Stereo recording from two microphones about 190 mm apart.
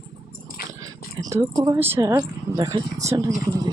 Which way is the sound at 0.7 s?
20° right (ahead or behind).